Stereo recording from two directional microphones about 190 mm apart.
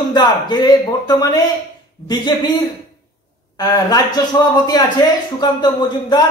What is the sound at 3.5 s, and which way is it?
Speech, 20° left (ahead or behind).